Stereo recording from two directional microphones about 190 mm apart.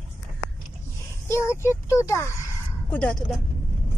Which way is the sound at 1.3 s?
15° left (ahead or behind).